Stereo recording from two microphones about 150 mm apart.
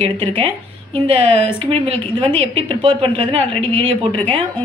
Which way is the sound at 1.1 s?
40° right (ahead or behind).